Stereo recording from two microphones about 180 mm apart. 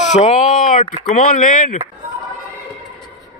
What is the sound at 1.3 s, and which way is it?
Speech, 45° left (ahead or behind).